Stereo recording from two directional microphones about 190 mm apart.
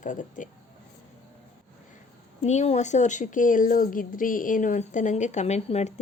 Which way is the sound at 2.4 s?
35° left (ahead or behind).